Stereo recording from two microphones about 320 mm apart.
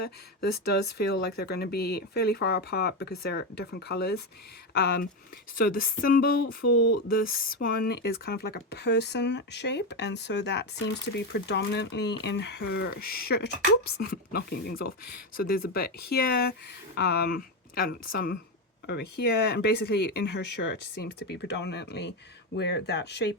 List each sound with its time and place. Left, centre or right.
0.0 s speech: left
6.6 s speech: left
7.1 s speech: left